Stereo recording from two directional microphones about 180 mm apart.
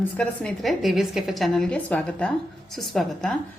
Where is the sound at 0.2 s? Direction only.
Centre (ahead or behind).